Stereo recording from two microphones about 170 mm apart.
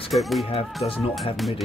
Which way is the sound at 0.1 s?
Centre (ahead or behind).